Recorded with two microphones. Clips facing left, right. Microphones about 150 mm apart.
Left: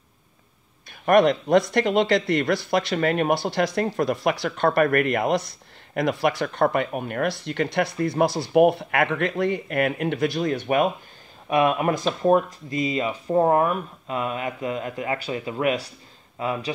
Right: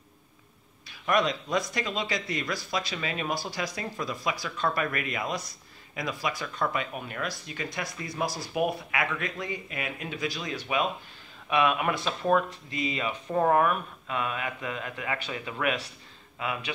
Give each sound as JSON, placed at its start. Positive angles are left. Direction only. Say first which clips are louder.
{"t": 1.0, "sound": "speech", "louder": "left 9 dB", "side_deg": 60}
{"t": 11.4, "sound": "speech", "louder": "left 5 dB", "side_deg": 35}
{"t": 13.3, "sound": "speech", "louder": "left 4 dB", "side_deg": 25}